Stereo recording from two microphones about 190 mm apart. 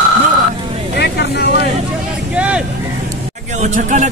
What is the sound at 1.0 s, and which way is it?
Vehicle, 60° left (ahead or behind).